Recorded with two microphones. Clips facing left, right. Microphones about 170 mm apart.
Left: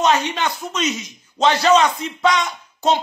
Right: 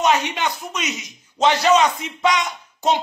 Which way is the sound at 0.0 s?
15° right (ahead or behind).